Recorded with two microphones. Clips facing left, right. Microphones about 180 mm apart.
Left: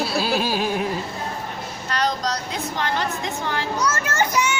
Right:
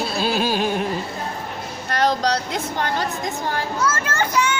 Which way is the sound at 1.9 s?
55° right (ahead or behind).